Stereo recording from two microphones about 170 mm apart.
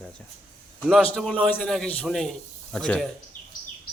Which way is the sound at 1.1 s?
5° left (ahead or behind).